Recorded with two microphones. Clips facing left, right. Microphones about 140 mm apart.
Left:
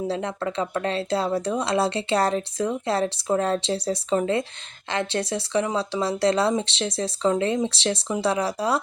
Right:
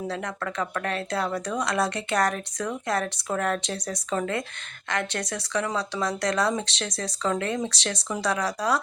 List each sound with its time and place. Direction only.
0.1 s speech: 25° left (ahead or behind)